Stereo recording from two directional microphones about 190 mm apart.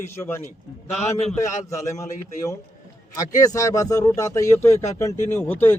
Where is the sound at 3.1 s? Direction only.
20° left (ahead or behind).